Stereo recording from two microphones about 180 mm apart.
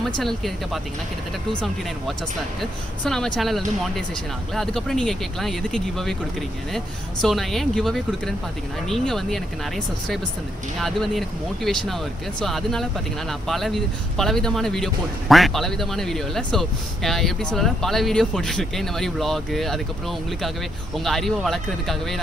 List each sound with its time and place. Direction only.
0.2 s speech: centre (ahead or behind)
2.6 s speech: 5° left (ahead or behind)
10.8 s speech: centre (ahead or behind)